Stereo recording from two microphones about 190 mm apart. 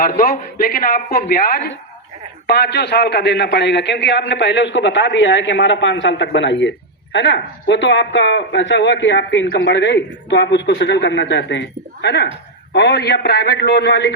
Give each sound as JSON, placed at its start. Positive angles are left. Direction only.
{"t": 0.0, "sound": "a man's voice", "side_deg": 50}